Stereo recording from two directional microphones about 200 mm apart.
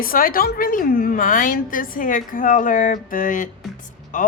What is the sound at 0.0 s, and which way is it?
A woman's voice, 45° left (ahead or behind).